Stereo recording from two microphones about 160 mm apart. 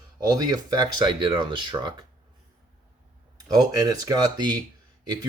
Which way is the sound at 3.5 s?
20° right (ahead or behind).